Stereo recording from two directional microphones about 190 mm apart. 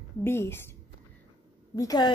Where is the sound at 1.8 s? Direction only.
20° left (ahead or behind).